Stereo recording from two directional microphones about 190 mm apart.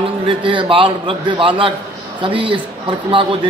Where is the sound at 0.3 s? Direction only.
25° right (ahead or behind).